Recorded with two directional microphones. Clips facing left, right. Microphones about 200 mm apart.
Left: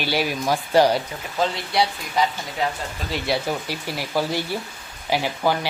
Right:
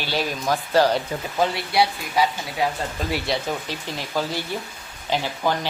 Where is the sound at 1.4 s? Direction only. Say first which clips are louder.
Right 1 dB; 10° right (ahead or behind).